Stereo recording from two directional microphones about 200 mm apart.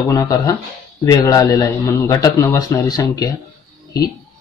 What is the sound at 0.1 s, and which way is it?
A man's voice, 15° left (ahead or behind).